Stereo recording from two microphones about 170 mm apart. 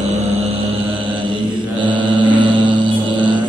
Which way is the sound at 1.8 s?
30° right (ahead or behind).